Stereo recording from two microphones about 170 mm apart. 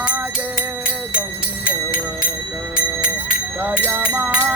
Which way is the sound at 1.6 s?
55° left (ahead or behind).